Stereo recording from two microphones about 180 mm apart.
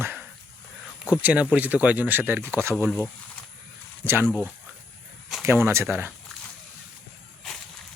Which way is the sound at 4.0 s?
15° right (ahead or behind).